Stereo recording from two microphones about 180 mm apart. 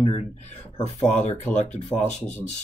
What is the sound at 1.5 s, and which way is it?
Speech, 40° left (ahead or behind).